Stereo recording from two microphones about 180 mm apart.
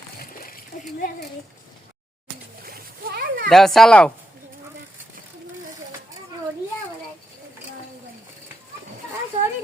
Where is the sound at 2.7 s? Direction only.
55° right (ahead or behind).